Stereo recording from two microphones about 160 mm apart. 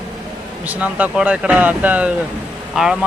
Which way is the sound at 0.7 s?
10° right (ahead or behind).